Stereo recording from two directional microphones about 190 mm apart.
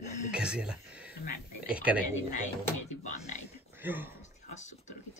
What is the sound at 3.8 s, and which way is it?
Speech, 10° right (ahead or behind).